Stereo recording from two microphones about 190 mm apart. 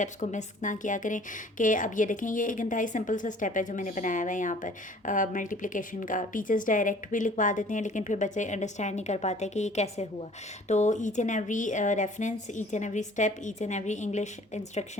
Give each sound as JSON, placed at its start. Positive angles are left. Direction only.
{"t": 0.0, "sound": "a woman's voice", "side_deg": 40}